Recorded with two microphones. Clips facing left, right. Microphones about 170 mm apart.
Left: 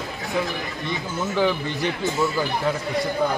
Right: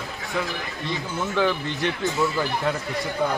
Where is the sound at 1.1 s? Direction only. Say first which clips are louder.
Left 1 dB; 5° left (ahead or behind).